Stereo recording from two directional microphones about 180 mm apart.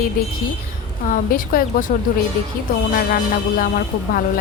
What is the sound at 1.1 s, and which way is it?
Speech, 50° left (ahead or behind).